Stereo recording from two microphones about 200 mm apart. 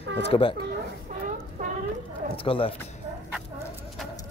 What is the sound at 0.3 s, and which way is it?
Speech, 25° left (ahead or behind).